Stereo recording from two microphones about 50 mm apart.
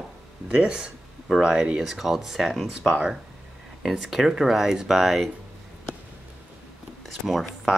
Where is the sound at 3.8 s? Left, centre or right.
Centre.